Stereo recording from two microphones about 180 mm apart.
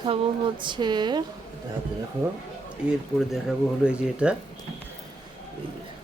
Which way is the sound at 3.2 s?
Centre (ahead or behind).